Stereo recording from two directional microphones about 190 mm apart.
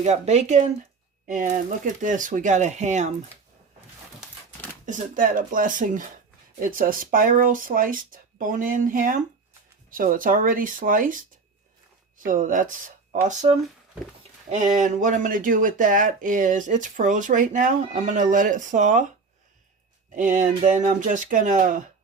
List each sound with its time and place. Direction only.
0.0 s speech: 35° right (ahead or behind)
4.9 s speech: 45° right (ahead or behind)
12.2 s speech: 45° right (ahead or behind)
20.1 s speech: 40° right (ahead or behind)